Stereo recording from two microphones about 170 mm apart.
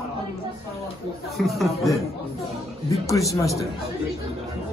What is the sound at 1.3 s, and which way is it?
Speech, centre (ahead or behind).